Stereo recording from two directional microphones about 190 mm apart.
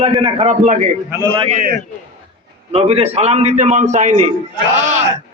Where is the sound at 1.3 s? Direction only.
30° right (ahead or behind).